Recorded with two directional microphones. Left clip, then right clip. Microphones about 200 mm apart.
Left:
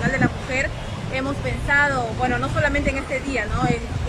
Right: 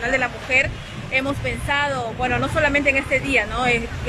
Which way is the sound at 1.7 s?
Centre (ahead or behind).